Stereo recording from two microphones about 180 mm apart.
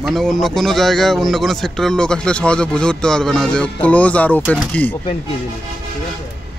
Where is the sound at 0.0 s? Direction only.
Centre (ahead or behind).